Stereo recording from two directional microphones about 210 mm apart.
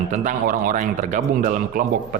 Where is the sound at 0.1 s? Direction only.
40° right (ahead or behind).